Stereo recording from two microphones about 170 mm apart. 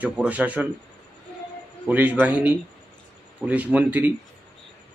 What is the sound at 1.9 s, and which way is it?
Speech, 10° right (ahead or behind).